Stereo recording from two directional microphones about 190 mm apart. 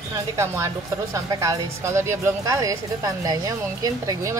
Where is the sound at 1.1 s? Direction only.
15° right (ahead or behind).